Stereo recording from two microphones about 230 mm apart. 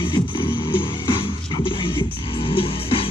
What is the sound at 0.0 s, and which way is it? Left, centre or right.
Music, left.